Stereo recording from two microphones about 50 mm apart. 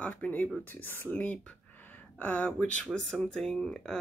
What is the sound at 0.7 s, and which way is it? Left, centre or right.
Speech, left.